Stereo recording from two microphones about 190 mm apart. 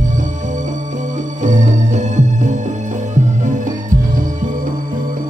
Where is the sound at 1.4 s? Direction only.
40° right (ahead or behind).